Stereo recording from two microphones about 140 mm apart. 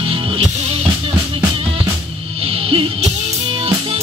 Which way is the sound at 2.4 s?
45° right (ahead or behind).